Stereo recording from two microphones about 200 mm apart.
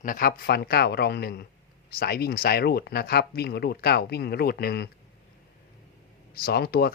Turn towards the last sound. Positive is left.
turn(degrees=50)  # may be behind; listen again after turning